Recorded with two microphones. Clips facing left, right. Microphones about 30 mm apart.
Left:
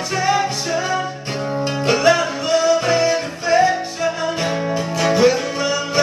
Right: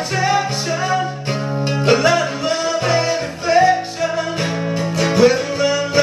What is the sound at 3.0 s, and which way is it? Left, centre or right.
Music, centre.